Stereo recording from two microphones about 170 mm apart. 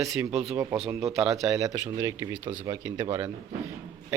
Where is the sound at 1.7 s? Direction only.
15° right (ahead or behind).